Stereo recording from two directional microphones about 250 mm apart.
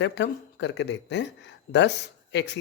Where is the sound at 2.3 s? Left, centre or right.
Left.